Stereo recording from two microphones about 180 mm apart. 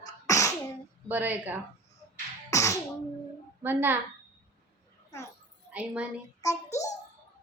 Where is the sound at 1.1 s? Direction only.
10° right (ahead or behind).